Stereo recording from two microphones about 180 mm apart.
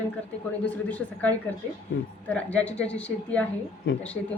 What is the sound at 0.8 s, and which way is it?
A woman's voice, 10° left (ahead or behind).